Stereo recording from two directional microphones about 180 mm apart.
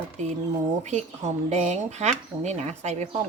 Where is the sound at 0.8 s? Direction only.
40° right (ahead or behind).